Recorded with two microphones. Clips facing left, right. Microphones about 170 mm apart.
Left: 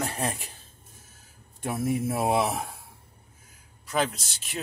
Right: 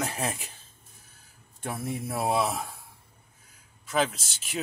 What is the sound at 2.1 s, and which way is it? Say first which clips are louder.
Speech: right 2 dB; 20° left (ahead or behind).